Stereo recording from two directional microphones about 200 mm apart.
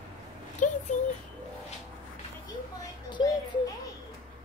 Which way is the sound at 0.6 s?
40° left (ahead or behind).